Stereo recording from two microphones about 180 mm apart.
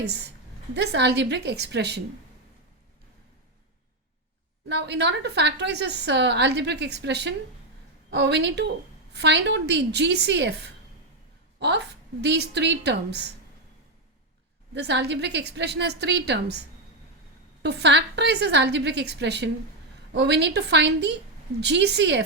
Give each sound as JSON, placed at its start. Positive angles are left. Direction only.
{"t": 0.0, "sound": "a woman's voice", "side_deg": -70}
{"t": 4.7, "sound": "a woman's voice", "side_deg": -70}
{"t": 14.7, "sound": "a woman's voice", "side_deg": -70}
{"t": 17.6, "sound": "a woman's voice", "side_deg": -70}